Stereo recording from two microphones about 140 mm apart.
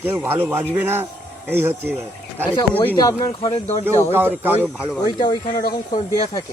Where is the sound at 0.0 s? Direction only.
15° right (ahead or behind).